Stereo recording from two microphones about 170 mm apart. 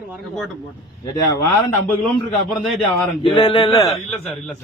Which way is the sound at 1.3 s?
20° left (ahead or behind).